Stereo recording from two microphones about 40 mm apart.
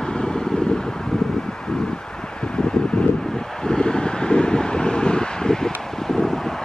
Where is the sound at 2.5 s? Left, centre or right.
Left.